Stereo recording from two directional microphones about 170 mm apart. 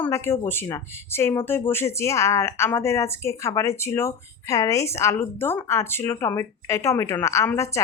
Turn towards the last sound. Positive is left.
turn(degrees=15)  # may be behind; listen again after turning